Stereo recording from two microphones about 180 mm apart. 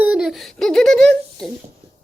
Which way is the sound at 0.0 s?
5° right (ahead or behind).